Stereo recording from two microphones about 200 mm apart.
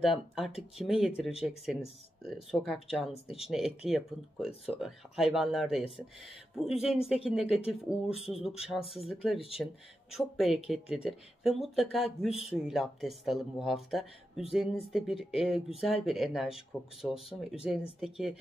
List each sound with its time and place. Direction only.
0.0 s speech: centre (ahead or behind)
17.1 s speech: 30° left (ahead or behind)
17.6 s speech: centre (ahead or behind)